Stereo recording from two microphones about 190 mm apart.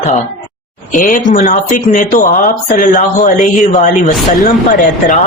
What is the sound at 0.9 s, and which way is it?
Speech, 45° left (ahead or behind).